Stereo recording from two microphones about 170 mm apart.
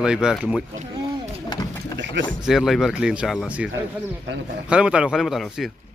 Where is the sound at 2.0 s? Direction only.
90° right.